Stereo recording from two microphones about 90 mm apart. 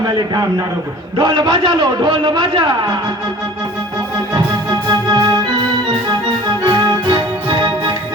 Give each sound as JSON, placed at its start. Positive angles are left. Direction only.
{"t": 0.0, "sound": "a man's voice", "side_deg": -50}
{"t": 1.2, "sound": "a man's voice", "side_deg": -60}
{"t": 4.7, "sound": "music", "side_deg": -50}
{"t": 6.7, "sound": "music", "side_deg": -55}